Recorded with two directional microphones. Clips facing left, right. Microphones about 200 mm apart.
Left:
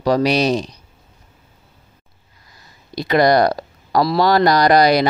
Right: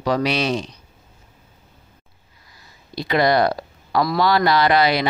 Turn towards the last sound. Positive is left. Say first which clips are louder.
# left 4 dB
turn(degrees=40)  # may be behind; listen again after turning